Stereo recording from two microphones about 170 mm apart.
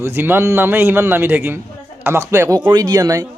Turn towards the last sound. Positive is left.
turn(degrees=-20)  # may be behind; listen again after turning